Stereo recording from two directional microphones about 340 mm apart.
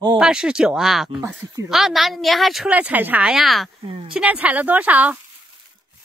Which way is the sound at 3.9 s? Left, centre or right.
Centre.